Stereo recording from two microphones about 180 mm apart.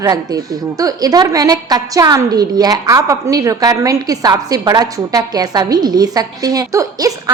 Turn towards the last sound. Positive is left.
turn(degrees=-20)  # may be behind; listen again after turning